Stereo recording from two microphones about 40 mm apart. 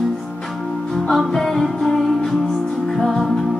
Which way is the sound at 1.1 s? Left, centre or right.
Centre.